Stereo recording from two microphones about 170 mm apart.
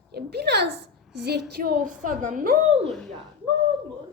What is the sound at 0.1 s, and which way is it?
A woman's voice, 70° right (ahead or behind).